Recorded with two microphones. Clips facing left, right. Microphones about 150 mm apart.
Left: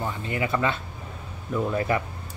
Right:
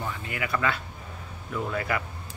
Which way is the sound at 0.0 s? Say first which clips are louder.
Left 5 dB; 25° left (ahead or behind).